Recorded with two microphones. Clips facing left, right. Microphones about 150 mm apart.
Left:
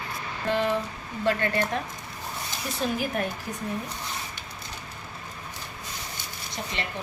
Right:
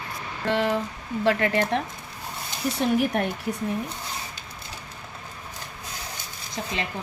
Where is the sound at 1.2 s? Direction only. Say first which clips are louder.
Right 3 dB; 90° right.